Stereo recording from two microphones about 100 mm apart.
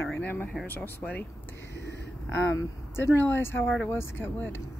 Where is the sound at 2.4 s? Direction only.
25° left (ahead or behind).